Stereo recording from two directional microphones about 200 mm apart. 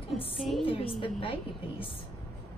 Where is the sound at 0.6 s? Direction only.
25° left (ahead or behind).